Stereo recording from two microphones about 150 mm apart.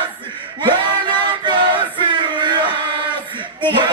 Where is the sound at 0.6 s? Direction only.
30° right (ahead or behind).